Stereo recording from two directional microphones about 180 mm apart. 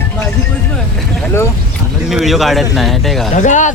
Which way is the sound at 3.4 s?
45° left (ahead or behind).